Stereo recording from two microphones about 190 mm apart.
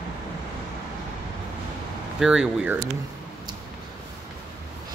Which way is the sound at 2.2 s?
5° right (ahead or behind).